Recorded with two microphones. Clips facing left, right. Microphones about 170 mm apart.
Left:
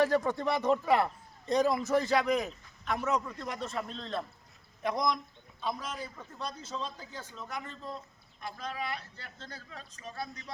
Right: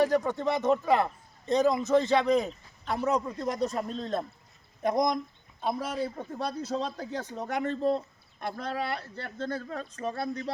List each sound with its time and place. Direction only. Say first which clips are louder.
0.0 s a man's voice: right 2 dB; 15° right (ahead or behind); by 5.7 s 50° right (ahead or behind)
5.9 s speech: right 9 dB; 30° right (ahead or behind)
6.3 s speech: right 6 dB; 65° right (ahead or behind)